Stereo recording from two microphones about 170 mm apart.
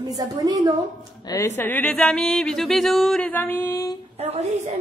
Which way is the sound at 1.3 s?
15° left (ahead or behind).